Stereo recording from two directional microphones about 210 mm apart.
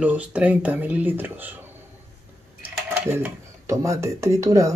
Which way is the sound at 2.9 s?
10° right (ahead or behind).